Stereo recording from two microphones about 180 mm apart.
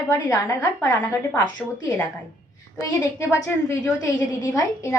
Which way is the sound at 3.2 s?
15° left (ahead or behind).